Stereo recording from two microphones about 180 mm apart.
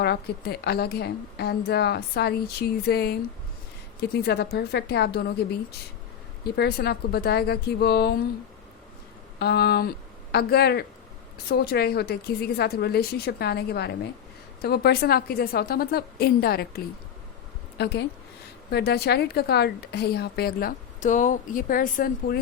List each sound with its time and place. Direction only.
0.0 s a woman's voice: 60° left (ahead or behind)
6.4 s a woman's voice: 60° left (ahead or behind)
9.4 s a woman's voice: 60° left (ahead or behind)